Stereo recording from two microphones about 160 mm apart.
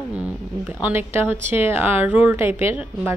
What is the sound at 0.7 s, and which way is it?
A woman's voice, 10° right (ahead or behind).